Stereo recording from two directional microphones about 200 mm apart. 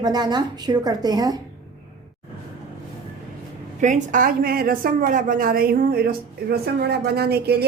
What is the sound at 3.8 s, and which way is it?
A woman's voice, 40° right (ahead or behind).